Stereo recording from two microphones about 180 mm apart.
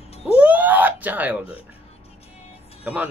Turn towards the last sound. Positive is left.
turn(degrees=-10)  # may be behind; listen again after turning